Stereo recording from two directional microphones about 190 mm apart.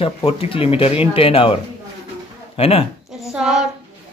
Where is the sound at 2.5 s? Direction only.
30° left (ahead or behind).